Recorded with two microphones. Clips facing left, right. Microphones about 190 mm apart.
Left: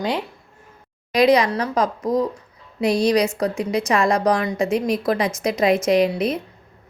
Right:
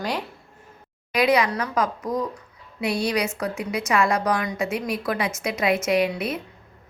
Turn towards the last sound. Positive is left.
turn(degrees=35)  # may be behind; listen again after turning